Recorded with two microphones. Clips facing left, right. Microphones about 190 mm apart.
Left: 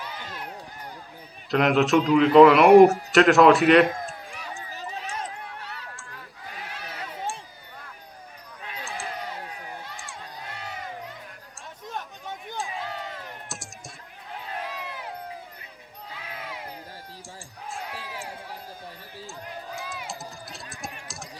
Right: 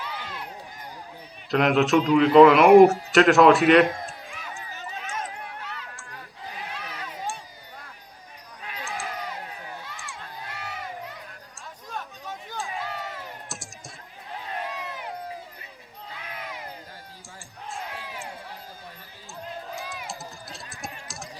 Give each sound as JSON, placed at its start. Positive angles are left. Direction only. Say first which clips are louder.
{"t": 1.5, "sound": "a man's voice", "louder": "even", "side_deg": 0}
{"t": 4.3, "sound": "a sound", "louder": "left 1 dB", "side_deg": 35}
{"t": 17.7, "sound": "basketball bounce", "louder": "even", "side_deg": 0}
{"t": 19.7, "sound": "run", "louder": "even", "side_deg": 0}